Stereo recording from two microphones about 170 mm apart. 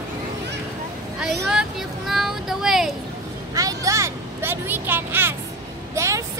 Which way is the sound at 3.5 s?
20° right (ahead or behind).